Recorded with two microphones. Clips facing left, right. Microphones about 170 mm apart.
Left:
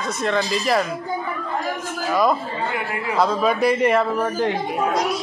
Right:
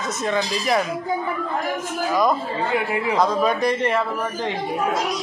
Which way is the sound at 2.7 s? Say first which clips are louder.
Right 3 dB; 20° right (ahead or behind).